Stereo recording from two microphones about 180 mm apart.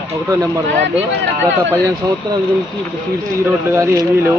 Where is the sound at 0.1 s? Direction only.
15° right (ahead or behind).